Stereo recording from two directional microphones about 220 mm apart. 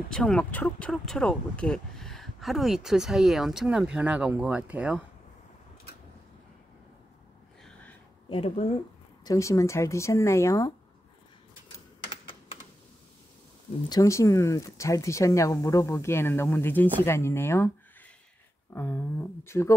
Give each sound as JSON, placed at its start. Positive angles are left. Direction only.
{"t": 0.1, "sound": "speech", "side_deg": 5}
{"t": 7.6, "sound": "a sound", "side_deg": 5}
{"t": 8.3, "sound": "speech", "side_deg": 25}
{"t": 9.2, "sound": "speech", "side_deg": 15}
{"t": 13.8, "sound": "speech", "side_deg": 15}
{"t": 18.8, "sound": "speech", "side_deg": 10}